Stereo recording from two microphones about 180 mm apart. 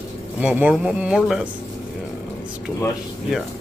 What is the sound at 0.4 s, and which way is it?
Speech, 5° right (ahead or behind).